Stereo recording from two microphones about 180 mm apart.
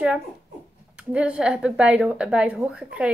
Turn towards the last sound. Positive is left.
turn(degrees=-5)  # may be behind; listen again after turning